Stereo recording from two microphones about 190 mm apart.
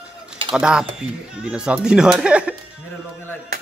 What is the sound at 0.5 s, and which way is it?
Speech, 5° right (ahead or behind).